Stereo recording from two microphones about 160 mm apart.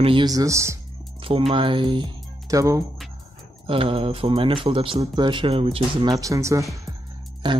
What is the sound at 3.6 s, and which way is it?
Speech, 35° right (ahead or behind).